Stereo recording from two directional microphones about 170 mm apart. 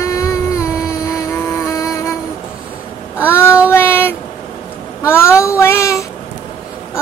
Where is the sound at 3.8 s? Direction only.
15° left (ahead or behind).